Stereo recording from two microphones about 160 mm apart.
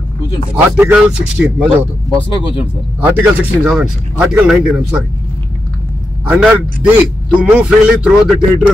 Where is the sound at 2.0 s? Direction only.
30° left (ahead or behind).